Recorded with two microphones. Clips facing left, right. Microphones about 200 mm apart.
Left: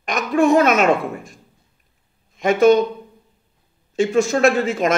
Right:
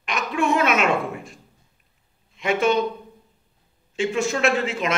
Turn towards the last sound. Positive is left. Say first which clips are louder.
# left 5 dB
turn(degrees=45)  # may be behind; listen again after turning